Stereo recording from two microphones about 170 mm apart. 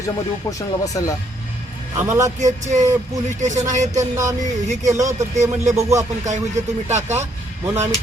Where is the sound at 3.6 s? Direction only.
45° right (ahead or behind).